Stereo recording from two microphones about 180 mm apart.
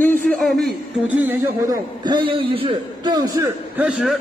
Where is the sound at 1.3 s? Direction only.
10° right (ahead or behind).